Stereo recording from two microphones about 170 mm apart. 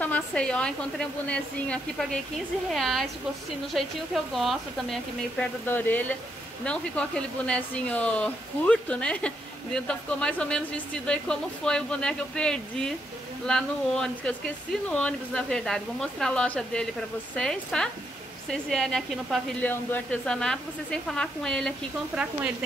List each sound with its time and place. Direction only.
0.0 s a woman's voice: 10° left (ahead or behind)